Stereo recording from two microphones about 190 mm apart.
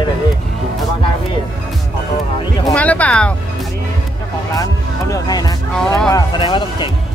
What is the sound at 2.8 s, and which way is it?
Speech, 5° left (ahead or behind).